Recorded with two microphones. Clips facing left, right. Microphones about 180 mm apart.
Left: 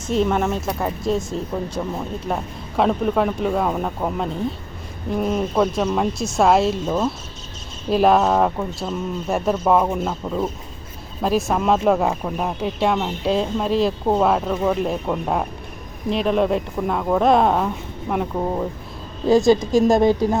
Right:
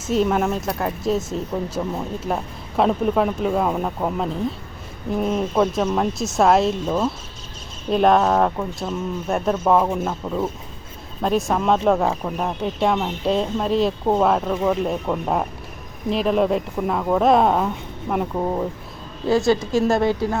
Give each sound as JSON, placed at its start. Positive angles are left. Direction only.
{"t": 0.0, "sound": "speech", "side_deg": -5}
{"t": 19.3, "sound": "a woman's voice", "side_deg": 15}